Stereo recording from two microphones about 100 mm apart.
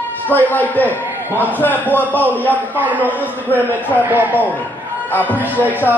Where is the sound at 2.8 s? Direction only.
15° right (ahead or behind).